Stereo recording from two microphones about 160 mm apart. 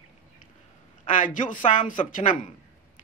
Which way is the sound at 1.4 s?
55° left (ahead or behind).